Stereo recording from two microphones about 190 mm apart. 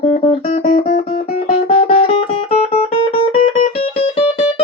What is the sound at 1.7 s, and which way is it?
Music, 30° left (ahead or behind).